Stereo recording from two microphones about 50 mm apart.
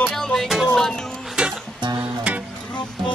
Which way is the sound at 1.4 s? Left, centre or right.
Centre.